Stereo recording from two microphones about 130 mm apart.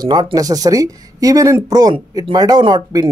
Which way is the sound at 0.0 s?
30° right (ahead or behind).